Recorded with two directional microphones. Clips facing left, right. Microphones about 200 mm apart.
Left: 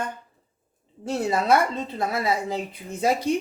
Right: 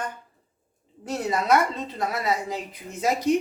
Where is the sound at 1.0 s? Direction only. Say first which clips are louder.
Left 2 dB; 30° left (ahead or behind).